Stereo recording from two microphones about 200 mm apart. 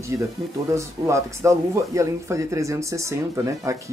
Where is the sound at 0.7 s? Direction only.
15° right (ahead or behind).